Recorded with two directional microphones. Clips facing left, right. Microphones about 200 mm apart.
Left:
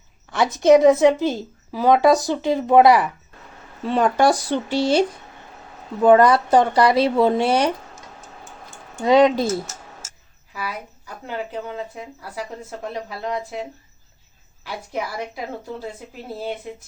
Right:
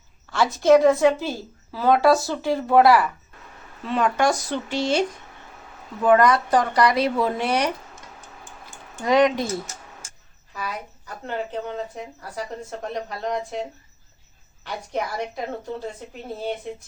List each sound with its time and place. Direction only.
0.3 s a woman's voice: 20° left (ahead or behind)
3.8 s a woman's voice: 35° left (ahead or behind)
9.0 s a woman's voice: 30° left (ahead or behind)
10.5 s speech: 10° left (ahead or behind)